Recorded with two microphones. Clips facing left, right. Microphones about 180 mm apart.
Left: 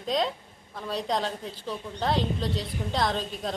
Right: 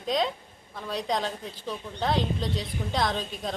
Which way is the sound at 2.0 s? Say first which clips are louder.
Even; centre (ahead or behind).